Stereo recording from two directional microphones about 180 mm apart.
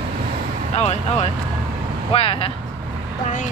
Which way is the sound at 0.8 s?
35° left (ahead or behind).